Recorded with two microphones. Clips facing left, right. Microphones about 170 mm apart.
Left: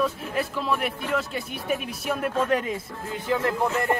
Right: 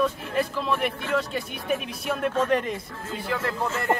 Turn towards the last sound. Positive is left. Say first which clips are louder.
# left 4 dB
turn(degrees=15)  # may be behind; listen again after turning